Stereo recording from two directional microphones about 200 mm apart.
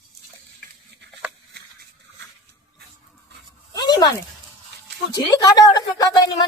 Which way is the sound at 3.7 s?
20° left (ahead or behind).